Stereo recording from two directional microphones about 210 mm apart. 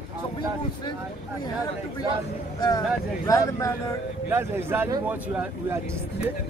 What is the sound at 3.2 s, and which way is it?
Speech, 15° left (ahead or behind).